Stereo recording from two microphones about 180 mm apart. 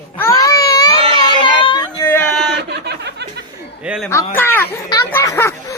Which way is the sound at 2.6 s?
70° right (ahead or behind).